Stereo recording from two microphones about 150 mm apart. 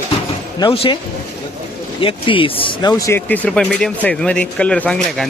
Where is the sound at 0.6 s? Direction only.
35° left (ahead or behind).